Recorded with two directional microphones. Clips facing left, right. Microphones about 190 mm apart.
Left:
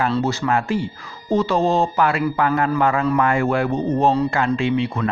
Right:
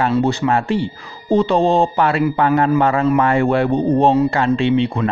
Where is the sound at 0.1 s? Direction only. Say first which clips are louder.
Right 4 dB; 15° right (ahead or behind).